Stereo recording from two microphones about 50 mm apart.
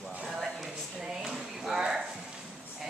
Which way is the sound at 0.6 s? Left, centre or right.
Centre.